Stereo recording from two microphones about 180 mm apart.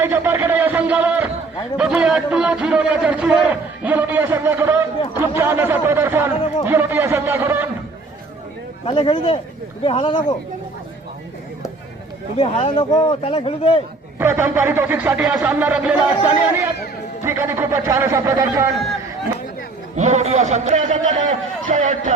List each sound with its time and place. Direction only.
0.0 s a sound: 10° right (ahead or behind)
1.8 s speech: 5° right (ahead or behind)
8.9 s speech: 30° left (ahead or behind)
12.4 s speech: 30° left (ahead or behind)
14.2 s speech: 10° right (ahead or behind)
20.0 s a man's voice: 40° right (ahead or behind)